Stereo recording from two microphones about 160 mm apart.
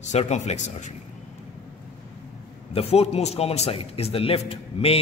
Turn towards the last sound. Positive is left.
turn(degrees=40)  # may be behind; listen again after turning